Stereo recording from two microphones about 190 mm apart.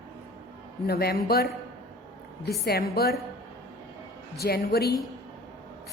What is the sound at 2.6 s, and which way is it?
Speech, 55° left (ahead or behind).